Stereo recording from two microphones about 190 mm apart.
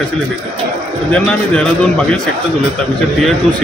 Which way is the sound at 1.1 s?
5° left (ahead or behind).